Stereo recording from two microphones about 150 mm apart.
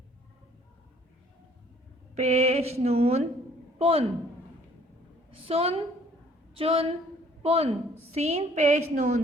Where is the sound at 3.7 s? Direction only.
40° right (ahead or behind).